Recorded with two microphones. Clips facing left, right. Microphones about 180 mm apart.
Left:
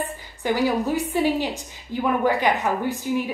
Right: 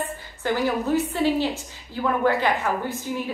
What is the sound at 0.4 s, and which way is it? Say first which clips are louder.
A woman's voice: left 2 dB; 15° left (ahead or behind).